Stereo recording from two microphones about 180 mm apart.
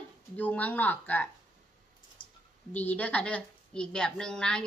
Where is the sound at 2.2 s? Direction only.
25° left (ahead or behind).